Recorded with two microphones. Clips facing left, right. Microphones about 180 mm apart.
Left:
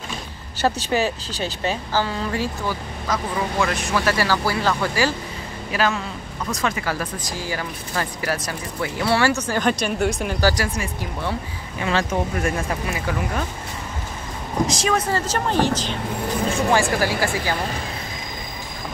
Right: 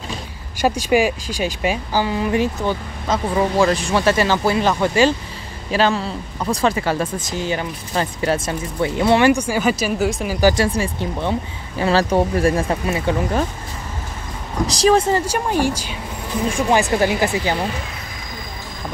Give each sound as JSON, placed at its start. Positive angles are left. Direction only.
{"t": 0.6, "sound": "speech", "side_deg": -10}
{"t": 10.4, "sound": "speech", "side_deg": -25}
{"t": 11.8, "sound": "speech", "side_deg": -35}
{"t": 14.7, "sound": "speech", "side_deg": -35}
{"t": 15.1, "sound": "speech", "side_deg": -10}
{"t": 17.0, "sound": "speech", "side_deg": -20}